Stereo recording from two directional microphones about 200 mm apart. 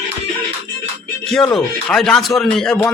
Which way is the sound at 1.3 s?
Centre (ahead or behind).